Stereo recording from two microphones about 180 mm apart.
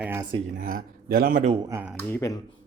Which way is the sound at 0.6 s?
50° right (ahead or behind).